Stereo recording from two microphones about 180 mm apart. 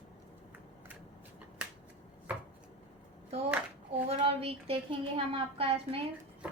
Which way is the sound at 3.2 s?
35° right (ahead or behind).